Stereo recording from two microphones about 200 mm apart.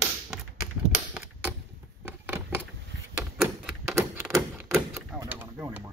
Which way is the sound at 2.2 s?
10° right (ahead or behind).